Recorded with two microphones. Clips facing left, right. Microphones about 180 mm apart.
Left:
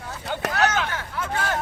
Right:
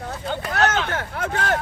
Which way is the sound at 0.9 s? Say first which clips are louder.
Right 3 dB; 55° right (ahead or behind).